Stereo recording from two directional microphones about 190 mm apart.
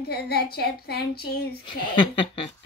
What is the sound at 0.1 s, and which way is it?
Speech, 55° left (ahead or behind).